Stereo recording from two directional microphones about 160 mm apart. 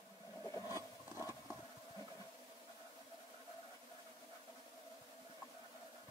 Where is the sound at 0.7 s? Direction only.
15° right (ahead or behind).